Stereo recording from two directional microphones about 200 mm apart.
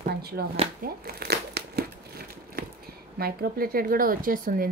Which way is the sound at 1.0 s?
55° right (ahead or behind).